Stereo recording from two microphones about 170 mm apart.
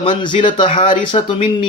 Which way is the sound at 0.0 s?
30° left (ahead or behind).